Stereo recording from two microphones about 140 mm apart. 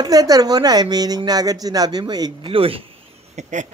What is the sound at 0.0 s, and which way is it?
Speech, 25° right (ahead or behind).